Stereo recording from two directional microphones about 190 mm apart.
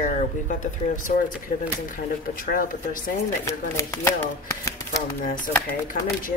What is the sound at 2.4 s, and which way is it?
Speech, 50° left (ahead or behind).